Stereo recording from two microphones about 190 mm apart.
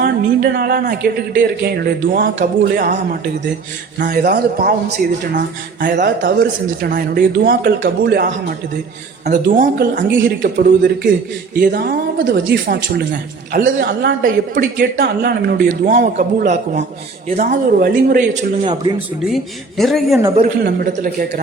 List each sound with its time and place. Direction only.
0.0 s speech: 55° right (ahead or behind)
5.8 s speech: 45° right (ahead or behind)
17.3 s speech: 50° right (ahead or behind)
19.2 s speech: centre (ahead or behind)
20.4 s speech: 50° right (ahead or behind)